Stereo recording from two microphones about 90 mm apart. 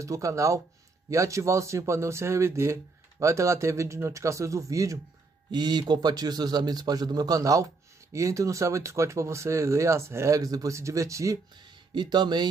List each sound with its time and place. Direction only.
0.0 s a man's voice: 35° right (ahead or behind)
5.5 s a man's voice: 55° right (ahead or behind); by 11.3 s 35° right (ahead or behind)
11.5 s speech: 55° right (ahead or behind)